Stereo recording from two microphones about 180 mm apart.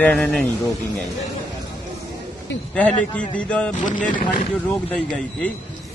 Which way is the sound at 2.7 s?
5° left (ahead or behind).